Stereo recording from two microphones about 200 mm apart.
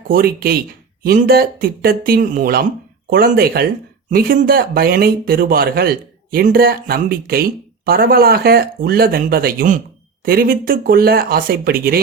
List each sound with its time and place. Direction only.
0.1 s speech: 45° right (ahead or behind)